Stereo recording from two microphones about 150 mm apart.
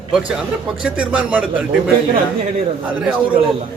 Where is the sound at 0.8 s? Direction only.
10° right (ahead or behind).